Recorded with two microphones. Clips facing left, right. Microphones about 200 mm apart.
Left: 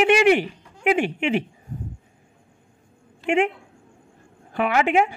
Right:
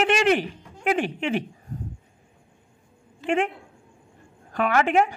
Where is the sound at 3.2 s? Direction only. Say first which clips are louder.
Left 3 dB; 10° left (ahead or behind).